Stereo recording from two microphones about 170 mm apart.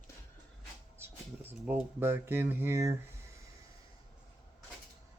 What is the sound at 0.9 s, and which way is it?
Speech, 10° right (ahead or behind).